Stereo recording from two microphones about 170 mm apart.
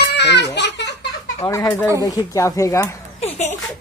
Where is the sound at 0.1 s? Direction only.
85° left.